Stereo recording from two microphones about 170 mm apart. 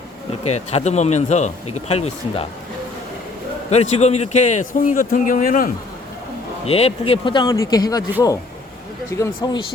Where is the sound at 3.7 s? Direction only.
40° left (ahead or behind).